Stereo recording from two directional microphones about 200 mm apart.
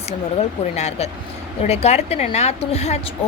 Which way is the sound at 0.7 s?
35° left (ahead or behind).